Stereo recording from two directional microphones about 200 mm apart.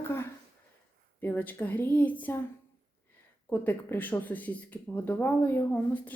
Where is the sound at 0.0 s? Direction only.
10° left (ahead or behind).